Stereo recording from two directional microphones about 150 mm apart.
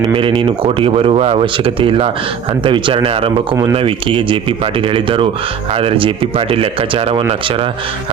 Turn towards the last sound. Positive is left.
turn(degrees=-35)  # may be behind; listen again after turning